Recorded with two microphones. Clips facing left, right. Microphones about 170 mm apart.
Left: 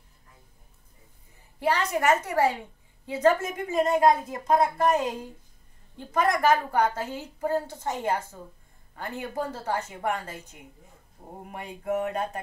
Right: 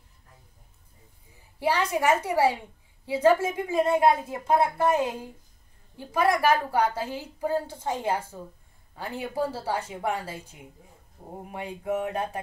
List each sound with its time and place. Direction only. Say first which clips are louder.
1.6 s a woman's voice: even; 10° right (ahead or behind)
11.6 s a woman's voice: left 1 dB; 10° right (ahead or behind)